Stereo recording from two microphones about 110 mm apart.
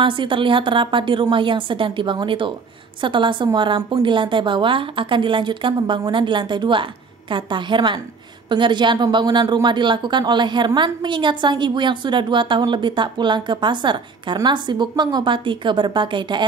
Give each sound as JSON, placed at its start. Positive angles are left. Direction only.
{"t": 0.0, "sound": "a woman's voice", "side_deg": -50}